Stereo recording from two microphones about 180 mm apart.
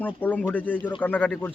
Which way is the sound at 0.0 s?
10° left (ahead or behind).